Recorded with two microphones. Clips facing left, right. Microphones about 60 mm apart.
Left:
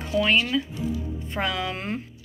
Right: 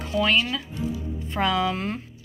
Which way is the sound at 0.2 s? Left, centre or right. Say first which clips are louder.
Even; left.